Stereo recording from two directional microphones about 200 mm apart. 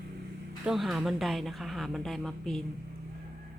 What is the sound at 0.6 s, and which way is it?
A woman's voice, centre (ahead or behind).